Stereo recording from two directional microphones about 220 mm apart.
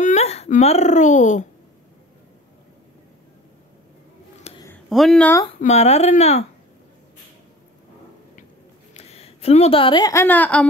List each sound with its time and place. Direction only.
0.0 s speech: 30° left (ahead or behind)
4.5 s a sound: 25° left (ahead or behind)
4.8 s speech: centre (ahead or behind)
5.6 s speech: 30° left (ahead or behind)
8.9 s a woman's voice: 30° left (ahead or behind); by 10.7 s 5° left (ahead or behind)